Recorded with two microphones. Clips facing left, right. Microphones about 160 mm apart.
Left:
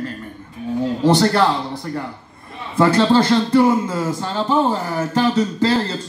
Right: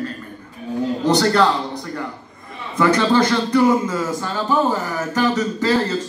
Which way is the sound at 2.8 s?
30° left (ahead or behind).